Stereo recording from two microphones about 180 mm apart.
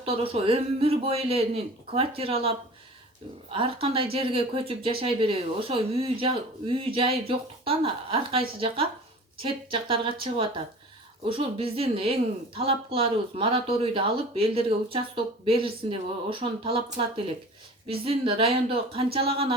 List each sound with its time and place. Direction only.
0.0 s speech: 30° right (ahead or behind)